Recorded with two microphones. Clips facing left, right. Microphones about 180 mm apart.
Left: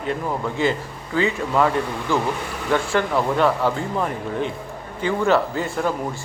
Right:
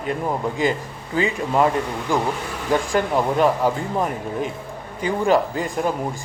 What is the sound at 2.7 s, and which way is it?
Speech, 15° right (ahead or behind).